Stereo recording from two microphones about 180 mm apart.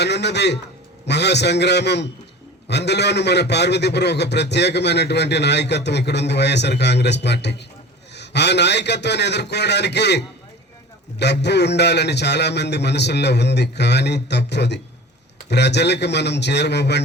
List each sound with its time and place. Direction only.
0.0 s a man's voice: 70° left (ahead or behind)